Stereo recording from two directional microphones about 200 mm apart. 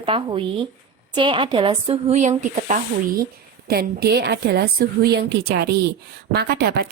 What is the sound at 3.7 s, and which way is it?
A woman's voice, 50° right (ahead or behind).